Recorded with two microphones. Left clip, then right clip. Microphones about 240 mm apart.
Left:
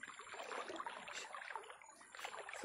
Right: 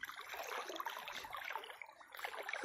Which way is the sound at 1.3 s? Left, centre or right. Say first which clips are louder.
Right 4 dB; right.